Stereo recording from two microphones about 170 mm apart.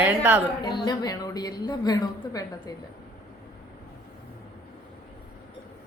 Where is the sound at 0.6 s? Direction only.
25° left (ahead or behind).